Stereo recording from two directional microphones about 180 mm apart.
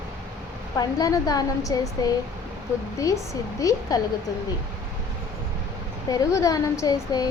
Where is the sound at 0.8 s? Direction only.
20° left (ahead or behind).